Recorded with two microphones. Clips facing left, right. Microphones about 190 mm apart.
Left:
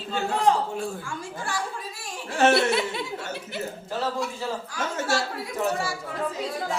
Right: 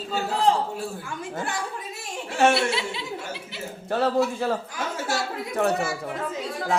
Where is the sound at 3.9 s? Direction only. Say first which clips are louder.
Right 6 dB; 60° right (ahead or behind).